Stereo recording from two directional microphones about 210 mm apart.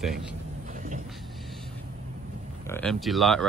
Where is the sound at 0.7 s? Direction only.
40° right (ahead or behind).